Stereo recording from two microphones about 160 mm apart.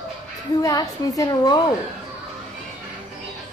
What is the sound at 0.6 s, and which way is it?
A woman's voice, 20° left (ahead or behind).